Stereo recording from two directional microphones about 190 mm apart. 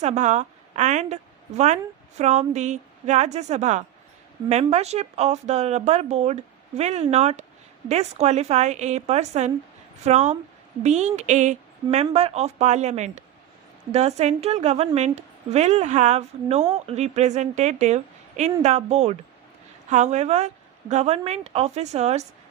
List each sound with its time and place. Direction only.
0.0 s a woman's voice: 40° right (ahead or behind)